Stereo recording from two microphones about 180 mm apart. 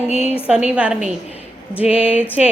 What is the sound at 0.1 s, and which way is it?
Speech, 35° left (ahead or behind).